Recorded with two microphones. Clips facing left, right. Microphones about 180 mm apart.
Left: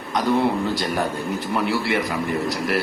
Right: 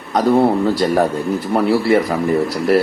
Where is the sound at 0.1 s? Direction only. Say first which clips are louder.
Right 6 dB; 35° right (ahead or behind).